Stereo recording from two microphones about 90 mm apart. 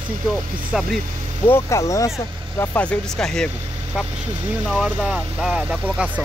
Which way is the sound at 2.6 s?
15° left (ahead or behind).